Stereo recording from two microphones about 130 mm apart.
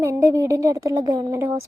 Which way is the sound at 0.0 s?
25° right (ahead or behind).